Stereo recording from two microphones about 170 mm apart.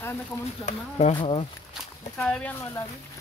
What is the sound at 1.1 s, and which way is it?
Speech, 30° left (ahead or behind).